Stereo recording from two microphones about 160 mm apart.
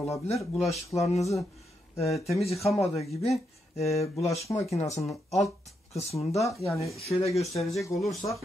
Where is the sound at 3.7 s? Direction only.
40° left (ahead or behind).